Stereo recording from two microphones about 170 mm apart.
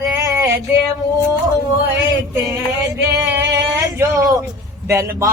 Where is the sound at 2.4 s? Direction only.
20° right (ahead or behind).